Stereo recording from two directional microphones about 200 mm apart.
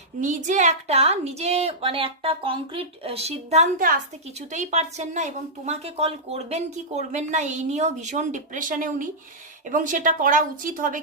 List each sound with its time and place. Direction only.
0.2 s speech: 40° right (ahead or behind)